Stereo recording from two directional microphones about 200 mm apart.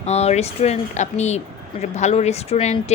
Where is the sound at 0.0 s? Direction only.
35° left (ahead or behind).